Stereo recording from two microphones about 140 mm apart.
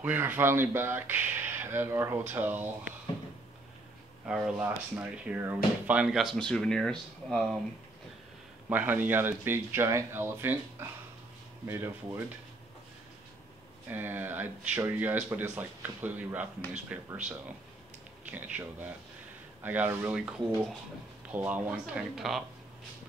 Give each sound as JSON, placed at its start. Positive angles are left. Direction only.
{"t": 0.0, "sound": "speech", "side_deg": -10}
{"t": 4.5, "sound": "speech", "side_deg": -10}
{"t": 8.6, "sound": "speech", "side_deg": -10}
{"t": 13.8, "sound": "speech", "side_deg": -15}
{"t": 20.2, "sound": "speech", "side_deg": -5}